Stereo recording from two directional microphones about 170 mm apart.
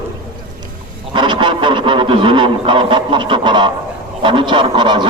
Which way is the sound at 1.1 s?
30° right (ahead or behind).